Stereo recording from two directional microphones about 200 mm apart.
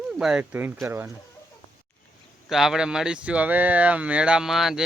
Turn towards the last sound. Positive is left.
turn(degrees=0)  # may be behind; listen again after turning